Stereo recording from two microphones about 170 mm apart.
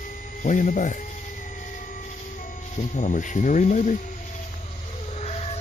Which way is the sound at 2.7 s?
45° left (ahead or behind).